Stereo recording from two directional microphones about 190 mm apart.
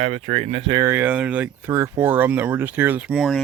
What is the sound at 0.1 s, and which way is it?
Speech, 35° right (ahead or behind).